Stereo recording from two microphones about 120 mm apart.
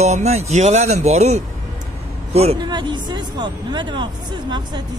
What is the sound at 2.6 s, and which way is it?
Speech, 40° right (ahead or behind).